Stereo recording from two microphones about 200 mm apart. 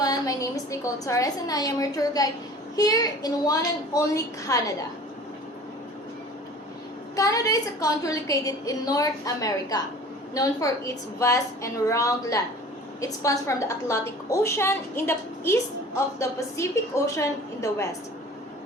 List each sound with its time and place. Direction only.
0.0 s a woman's voice: 20° left (ahead or behind)
7.2 s a woman's voice: 15° left (ahead or behind)